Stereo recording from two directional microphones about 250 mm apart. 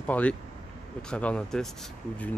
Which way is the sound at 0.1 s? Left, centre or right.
Centre.